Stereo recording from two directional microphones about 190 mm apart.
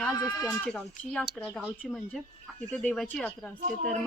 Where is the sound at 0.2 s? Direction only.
20° left (ahead or behind).